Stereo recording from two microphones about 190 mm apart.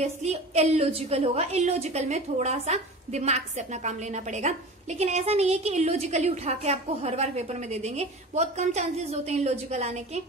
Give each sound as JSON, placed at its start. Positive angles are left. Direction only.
{"t": 0.0, "sound": "a woman's voice", "side_deg": -35}